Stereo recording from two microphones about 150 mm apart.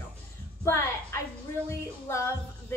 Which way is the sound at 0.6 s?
15° left (ahead or behind).